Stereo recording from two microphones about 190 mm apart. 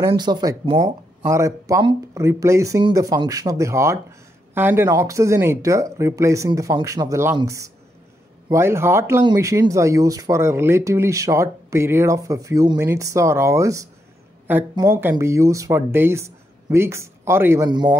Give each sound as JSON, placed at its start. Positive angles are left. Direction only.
{"t": 0.0, "sound": "speech", "side_deg": -25}